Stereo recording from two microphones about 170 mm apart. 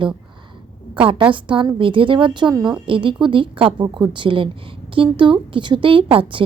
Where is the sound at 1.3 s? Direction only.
30° right (ahead or behind).